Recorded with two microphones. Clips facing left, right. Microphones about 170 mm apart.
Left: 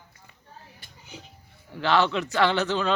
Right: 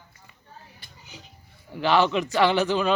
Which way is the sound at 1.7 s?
15° right (ahead or behind).